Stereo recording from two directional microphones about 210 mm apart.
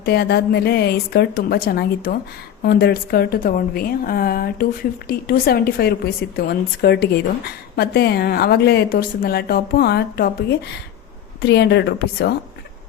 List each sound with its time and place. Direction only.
0.0 s a woman's voice: 50° left (ahead or behind)
11.4 s a woman's voice: 55° left (ahead or behind)